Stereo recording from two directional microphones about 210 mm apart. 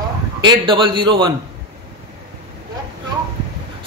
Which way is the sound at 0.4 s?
20° right (ahead or behind).